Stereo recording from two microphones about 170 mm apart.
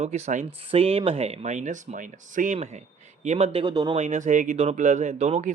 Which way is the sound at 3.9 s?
45° right (ahead or behind).